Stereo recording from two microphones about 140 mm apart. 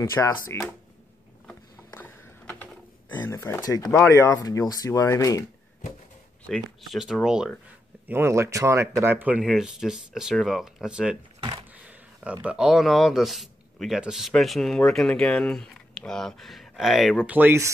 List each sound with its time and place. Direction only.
0.1 s speech: 20° left (ahead or behind)
1.5 s a sound: 15° left (ahead or behind)
3.2 s speech: 15° left (ahead or behind)
6.4 s speech: 5° left (ahead or behind)
8.1 s speech: 20° right (ahead or behind)
9.4 s speech: 5° right (ahead or behind)
17.3 s speech: 15° right (ahead or behind)